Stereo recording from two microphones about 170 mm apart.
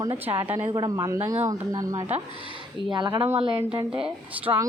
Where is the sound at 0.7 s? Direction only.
25° right (ahead or behind).